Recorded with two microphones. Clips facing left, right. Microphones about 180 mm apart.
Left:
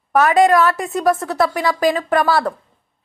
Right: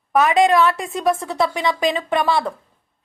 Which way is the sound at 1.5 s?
25° right (ahead or behind).